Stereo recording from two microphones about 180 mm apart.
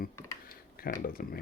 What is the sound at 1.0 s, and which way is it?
Speech, 55° left (ahead or behind).